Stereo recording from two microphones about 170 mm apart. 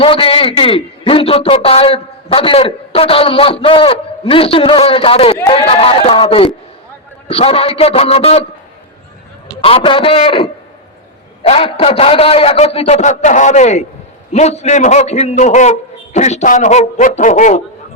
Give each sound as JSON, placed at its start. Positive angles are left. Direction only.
{"t": 0.0, "sound": "a man's voice", "side_deg": 35}
{"t": 9.6, "sound": "a man's voice", "side_deg": 30}